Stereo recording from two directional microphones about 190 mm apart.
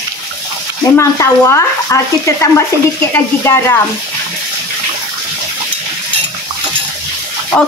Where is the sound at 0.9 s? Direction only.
15° left (ahead or behind).